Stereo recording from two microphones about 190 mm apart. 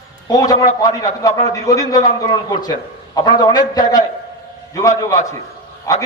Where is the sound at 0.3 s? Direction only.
20° left (ahead or behind).